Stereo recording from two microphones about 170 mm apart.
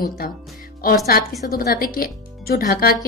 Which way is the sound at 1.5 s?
60° left (ahead or behind).